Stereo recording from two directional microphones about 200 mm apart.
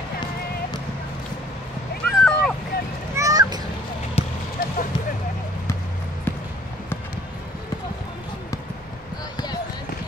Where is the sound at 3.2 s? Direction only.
20° right (ahead or behind).